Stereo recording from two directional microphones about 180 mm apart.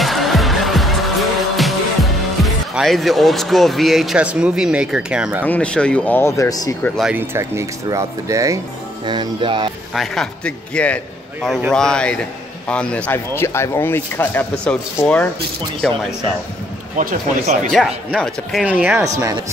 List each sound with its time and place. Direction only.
0.0 s music: centre (ahead or behind)
1.6 s speech: centre (ahead or behind)
5.5 s speech: 5° left (ahead or behind)
7.0 s speech: 10° right (ahead or behind); by 9.7 s 25° right (ahead or behind)
9.9 s speech: 5° left (ahead or behind)
16.9 s speech: 45° right (ahead or behind)
17.7 s speech: centre (ahead or behind); by 19.4 s 20° right (ahead or behind)